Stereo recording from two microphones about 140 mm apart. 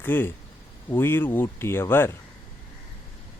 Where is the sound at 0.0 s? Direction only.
15° left (ahead or behind).